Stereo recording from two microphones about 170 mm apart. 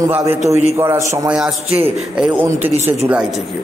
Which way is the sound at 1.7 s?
35° right (ahead or behind).